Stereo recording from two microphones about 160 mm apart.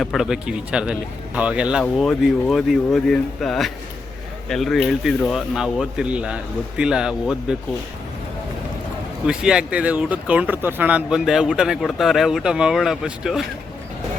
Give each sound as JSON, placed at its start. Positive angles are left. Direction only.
{"t": 0.0, "sound": "speech", "side_deg": 0}
{"t": 9.2, "sound": "speech", "side_deg": -5}